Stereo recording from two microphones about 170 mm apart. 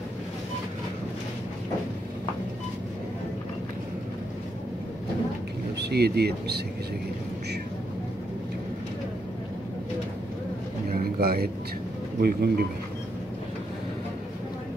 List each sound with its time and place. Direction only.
5.8 s speech: 75° right (ahead or behind)
10.9 s a sound: 65° right (ahead or behind)
12.2 s speech: 65° right (ahead or behind)